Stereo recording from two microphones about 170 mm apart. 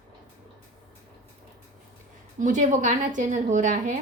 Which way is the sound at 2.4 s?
50° right (ahead or behind).